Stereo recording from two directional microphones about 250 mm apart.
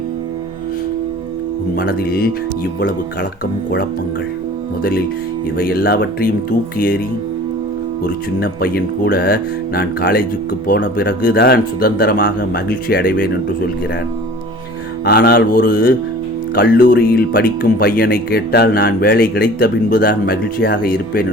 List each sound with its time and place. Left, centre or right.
1.7 s speech: left
5.5 s speech: left
8.0 s speech: left
15.0 s speech: left